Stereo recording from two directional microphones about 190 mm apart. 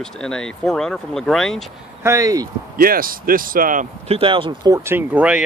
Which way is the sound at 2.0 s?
15° right (ahead or behind).